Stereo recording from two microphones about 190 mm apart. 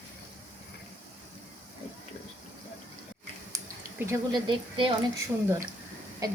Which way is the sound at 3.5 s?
20° right (ahead or behind).